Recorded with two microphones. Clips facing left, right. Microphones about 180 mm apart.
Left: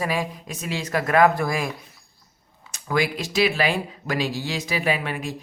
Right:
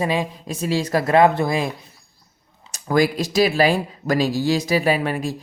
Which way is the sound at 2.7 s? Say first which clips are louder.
Right 6 dB; 40° right (ahead or behind).